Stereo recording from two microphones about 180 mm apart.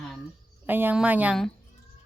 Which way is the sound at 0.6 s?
10° right (ahead or behind).